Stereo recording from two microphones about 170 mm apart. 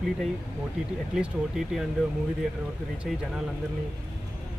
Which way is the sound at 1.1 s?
Centre (ahead or behind).